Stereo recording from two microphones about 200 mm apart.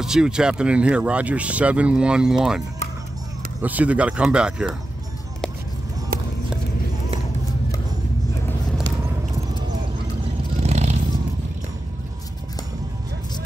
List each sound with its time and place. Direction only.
0.0 s speech: 5° right (ahead or behind)
3.6 s speech: 5° right (ahead or behind)
6.1 s run: 50° right (ahead or behind)
10.6 s vehicle: 35° right (ahead or behind)